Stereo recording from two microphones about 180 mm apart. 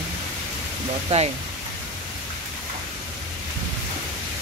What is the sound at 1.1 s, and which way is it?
Speech, 35° right (ahead or behind).